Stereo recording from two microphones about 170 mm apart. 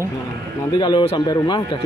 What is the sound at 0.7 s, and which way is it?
A man's voice, 25° left (ahead or behind).